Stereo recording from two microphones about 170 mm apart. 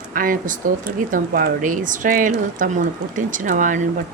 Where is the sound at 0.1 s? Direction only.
55° right (ahead or behind).